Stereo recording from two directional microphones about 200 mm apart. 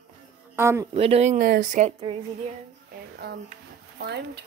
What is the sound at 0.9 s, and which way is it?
Speech, 30° right (ahead or behind).